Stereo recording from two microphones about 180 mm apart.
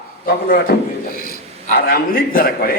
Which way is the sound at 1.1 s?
55° left (ahead or behind).